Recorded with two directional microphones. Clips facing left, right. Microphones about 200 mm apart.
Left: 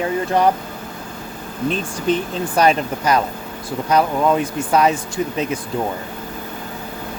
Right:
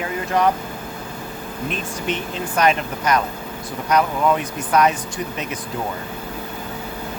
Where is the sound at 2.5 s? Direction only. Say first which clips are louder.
Left 3 dB; 30° left (ahead or behind).